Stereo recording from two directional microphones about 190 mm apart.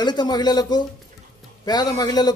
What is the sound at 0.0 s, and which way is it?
Speech, 20° left (ahead or behind).